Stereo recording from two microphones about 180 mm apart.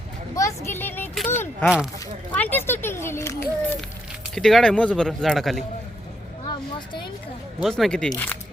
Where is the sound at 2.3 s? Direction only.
10° left (ahead or behind).